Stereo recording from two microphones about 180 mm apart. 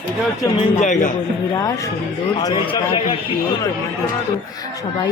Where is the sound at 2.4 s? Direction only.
20° left (ahead or behind).